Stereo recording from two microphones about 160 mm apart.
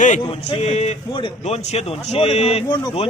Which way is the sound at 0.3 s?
40° left (ahead or behind).